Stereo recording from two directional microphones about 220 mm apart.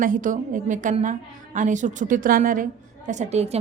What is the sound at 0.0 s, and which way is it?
A woman's voice, 35° right (ahead or behind).